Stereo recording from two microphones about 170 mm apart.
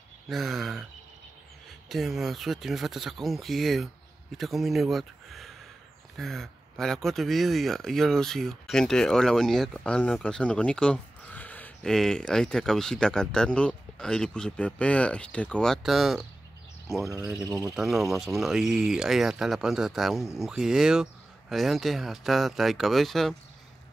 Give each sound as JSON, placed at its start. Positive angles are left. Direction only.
{"t": 0.3, "sound": "speech", "side_deg": 0}
{"t": 1.9, "sound": "speech", "side_deg": 0}
{"t": 17.4, "sound": "speech", "side_deg": -20}
{"t": 17.7, "sound": "speech", "side_deg": 0}